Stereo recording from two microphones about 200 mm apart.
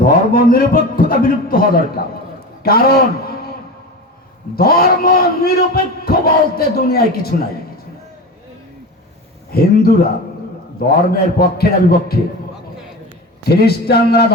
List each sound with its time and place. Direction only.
0.0 s a sound: 45° left (ahead or behind)
2.6 s a man's voice: 50° left (ahead or behind)
4.5 s a man's voice: 50° left (ahead or behind)
9.5 s a man's voice: 50° left (ahead or behind)
13.4 s a man's voice: 50° left (ahead or behind)